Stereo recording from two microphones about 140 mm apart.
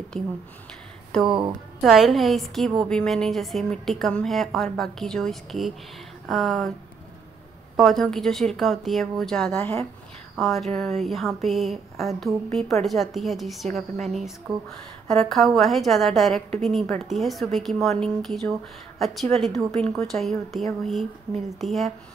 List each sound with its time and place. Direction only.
0.2 s a woman's voice: centre (ahead or behind)
1.3 s a woman's voice: 35° right (ahead or behind)
1.8 s a woman's voice: centre (ahead or behind)
7.7 s a woman's voice: centre (ahead or behind)
9.6 s speech: 20° left (ahead or behind)
10.3 s a woman's voice: centre (ahead or behind)